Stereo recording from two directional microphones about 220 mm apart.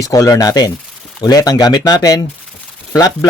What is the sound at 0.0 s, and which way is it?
A man's voice, 15° left (ahead or behind).